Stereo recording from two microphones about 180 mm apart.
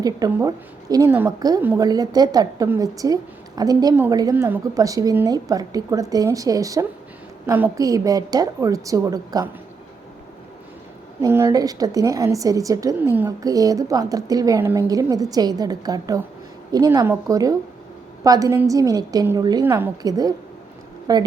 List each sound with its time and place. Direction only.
0.3 s a woman's voice: 15° right (ahead or behind)
11.2 s a woman's voice: 15° right (ahead or behind)